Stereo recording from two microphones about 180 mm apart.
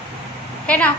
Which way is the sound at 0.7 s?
5° left (ahead or behind).